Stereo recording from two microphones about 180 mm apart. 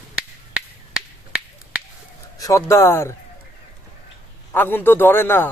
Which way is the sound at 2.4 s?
15° left (ahead or behind).